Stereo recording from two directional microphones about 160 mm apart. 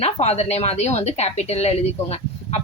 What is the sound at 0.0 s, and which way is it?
A woman's voice, 40° left (ahead or behind).